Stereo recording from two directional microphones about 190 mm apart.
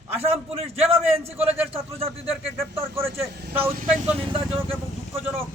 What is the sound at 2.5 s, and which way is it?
Speech, 15° right (ahead or behind).